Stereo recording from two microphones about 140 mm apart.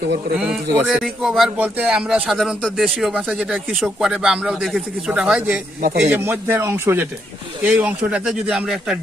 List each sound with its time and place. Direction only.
0.3 s a man's voice: 5° right (ahead or behind)
5.8 s a man's voice: 90° right
6.1 s speech: 15° right (ahead or behind)